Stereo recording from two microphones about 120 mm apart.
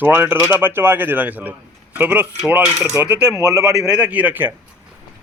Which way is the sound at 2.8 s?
20° right (ahead or behind).